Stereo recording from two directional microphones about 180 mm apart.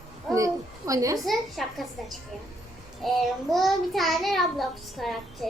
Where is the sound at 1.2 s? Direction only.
Centre (ahead or behind).